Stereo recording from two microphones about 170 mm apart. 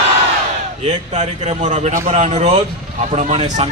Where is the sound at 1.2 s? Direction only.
45° right (ahead or behind).